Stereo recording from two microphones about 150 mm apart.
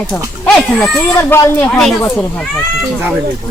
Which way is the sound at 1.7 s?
Centre (ahead or behind).